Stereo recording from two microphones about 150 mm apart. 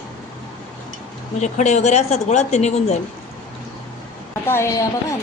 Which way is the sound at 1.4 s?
50° left (ahead or behind).